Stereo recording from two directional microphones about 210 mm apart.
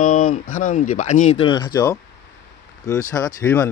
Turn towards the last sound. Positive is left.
turn(degrees=10)  # may be behind; listen again after turning